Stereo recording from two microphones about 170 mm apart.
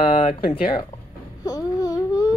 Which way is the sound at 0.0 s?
55° left (ahead or behind).